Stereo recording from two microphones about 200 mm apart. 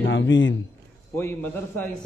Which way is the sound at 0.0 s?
70° left (ahead or behind).